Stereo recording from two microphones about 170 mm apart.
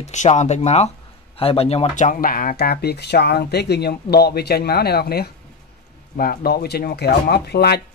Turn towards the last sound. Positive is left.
turn(degrees=70)  # may be behind; listen again after turning